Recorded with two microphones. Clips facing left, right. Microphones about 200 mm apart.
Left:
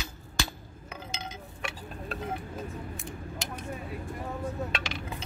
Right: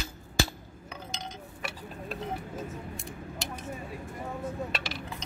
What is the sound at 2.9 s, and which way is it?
Scissors, centre (ahead or behind).